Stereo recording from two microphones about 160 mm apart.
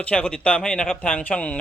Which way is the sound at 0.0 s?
5° left (ahead or behind).